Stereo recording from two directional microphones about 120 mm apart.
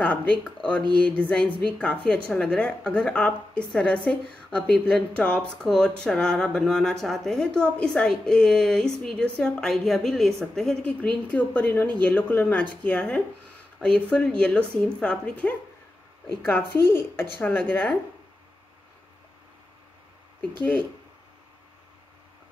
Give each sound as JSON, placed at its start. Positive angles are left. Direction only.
{"t": 0.0, "sound": "a woman's voice", "side_deg": 10}